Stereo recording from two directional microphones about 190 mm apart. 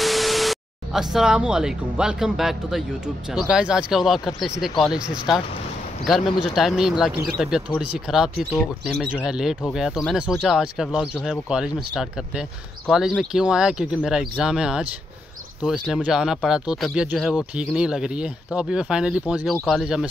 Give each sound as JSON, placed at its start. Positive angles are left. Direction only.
{"t": 0.0, "sound": "speech", "side_deg": 0}
{"t": 6.4, "sound": "speech", "side_deg": 0}